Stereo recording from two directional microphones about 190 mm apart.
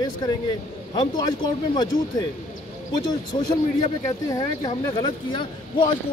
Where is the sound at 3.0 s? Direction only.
20° left (ahead or behind).